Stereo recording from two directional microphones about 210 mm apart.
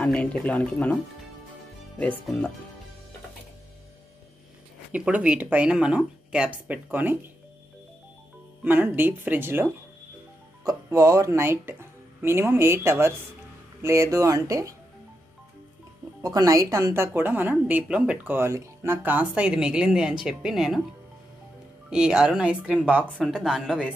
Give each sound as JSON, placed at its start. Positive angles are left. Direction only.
{"t": 0.0, "sound": "speech", "side_deg": 5}
{"t": 2.0, "sound": "speech", "side_deg": 5}
{"t": 4.9, "sound": "speech", "side_deg": -5}
{"t": 8.6, "sound": "a woman's voice", "side_deg": -10}
{"t": 16.2, "sound": "a woman's voice", "side_deg": -15}
{"t": 21.9, "sound": "speech", "side_deg": -5}